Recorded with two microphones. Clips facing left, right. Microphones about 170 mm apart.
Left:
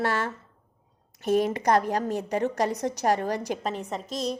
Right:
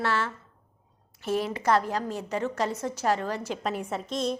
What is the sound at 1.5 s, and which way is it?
Speech, 45° left (ahead or behind).